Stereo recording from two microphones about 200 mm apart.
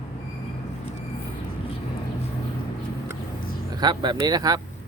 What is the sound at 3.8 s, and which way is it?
Speech, 20° right (ahead or behind).